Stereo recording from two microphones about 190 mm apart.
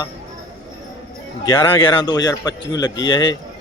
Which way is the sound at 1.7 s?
25° left (ahead or behind).